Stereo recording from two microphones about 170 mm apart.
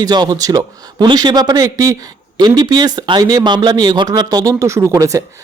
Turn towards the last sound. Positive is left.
turn(degrees=-20)  # may be behind; listen again after turning